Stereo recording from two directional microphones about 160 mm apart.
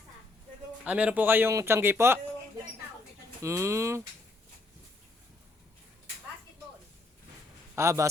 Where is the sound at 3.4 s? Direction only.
15° right (ahead or behind).